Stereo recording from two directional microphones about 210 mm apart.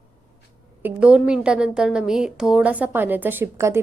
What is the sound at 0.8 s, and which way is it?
A woman's voice, 5° right (ahead or behind).